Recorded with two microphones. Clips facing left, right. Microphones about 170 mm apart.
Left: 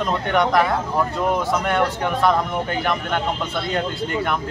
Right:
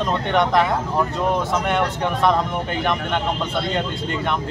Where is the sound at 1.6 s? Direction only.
Centre (ahead or behind).